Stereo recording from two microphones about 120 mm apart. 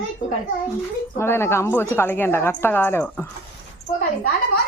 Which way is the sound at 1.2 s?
20° left (ahead or behind).